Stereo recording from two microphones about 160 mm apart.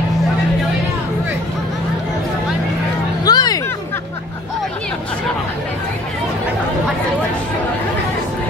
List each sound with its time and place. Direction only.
3.3 s music: 25° left (ahead or behind)